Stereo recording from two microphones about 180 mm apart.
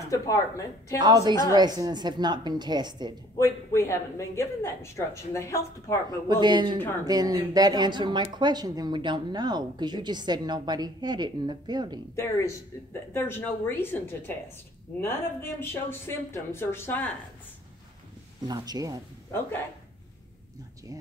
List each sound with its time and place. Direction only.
0.1 s speech: 15° left (ahead or behind)
0.9 s speech: 25° right (ahead or behind)
3.3 s speech: 15° left (ahead or behind)
6.0 s speech: 25° right (ahead or behind)
12.2 s speech: 15° left (ahead or behind)
18.5 s speech: 20° right (ahead or behind)